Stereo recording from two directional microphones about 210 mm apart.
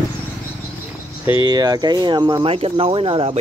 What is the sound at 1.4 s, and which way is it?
Speech, 20° right (ahead or behind).